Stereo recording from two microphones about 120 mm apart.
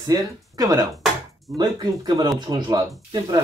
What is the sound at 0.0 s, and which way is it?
Speech, 30° right (ahead or behind).